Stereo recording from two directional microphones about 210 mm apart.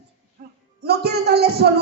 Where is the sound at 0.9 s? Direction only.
50° right (ahead or behind).